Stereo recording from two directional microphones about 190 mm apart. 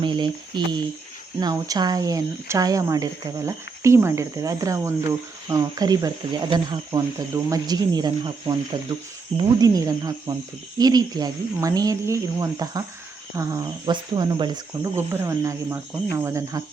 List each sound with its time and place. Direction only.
0.0 s speech: 25° right (ahead or behind)